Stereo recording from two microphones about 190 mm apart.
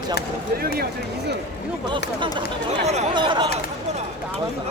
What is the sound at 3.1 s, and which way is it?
Speech, 25° right (ahead or behind).